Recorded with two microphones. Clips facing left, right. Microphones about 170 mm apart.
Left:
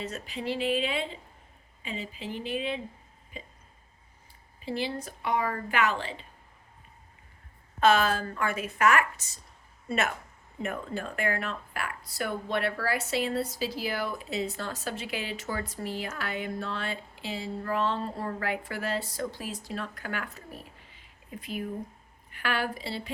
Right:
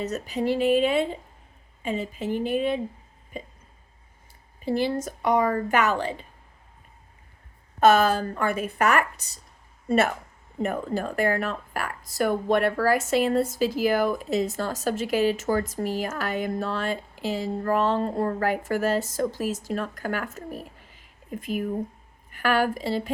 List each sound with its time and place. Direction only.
0.0 s speech: 40° right (ahead or behind)
4.6 s speech: 50° right (ahead or behind)
7.8 s a woman's voice: 40° right (ahead or behind)